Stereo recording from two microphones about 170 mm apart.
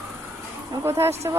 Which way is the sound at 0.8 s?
15° right (ahead or behind).